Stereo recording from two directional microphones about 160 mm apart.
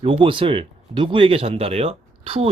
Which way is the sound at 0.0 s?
35° right (ahead or behind).